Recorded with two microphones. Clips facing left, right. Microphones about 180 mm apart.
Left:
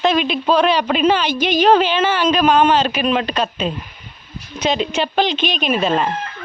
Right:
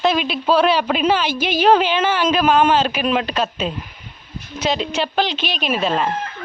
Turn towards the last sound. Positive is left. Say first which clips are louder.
# left 2 dB
turn(degrees=0)  # may be behind; listen again after turning